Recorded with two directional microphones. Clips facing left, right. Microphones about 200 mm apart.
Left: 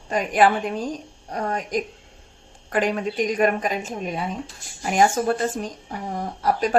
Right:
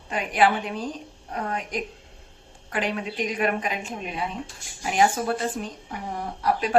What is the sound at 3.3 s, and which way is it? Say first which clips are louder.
Speech: left 3 dB; 45° left (ahead or behind).